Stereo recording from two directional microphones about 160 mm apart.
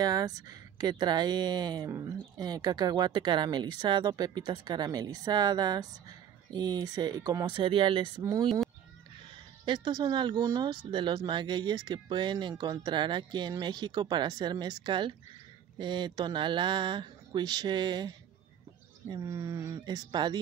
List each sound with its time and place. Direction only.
0.0 s speech: 25° right (ahead or behind)
9.7 s speech: 25° right (ahead or behind)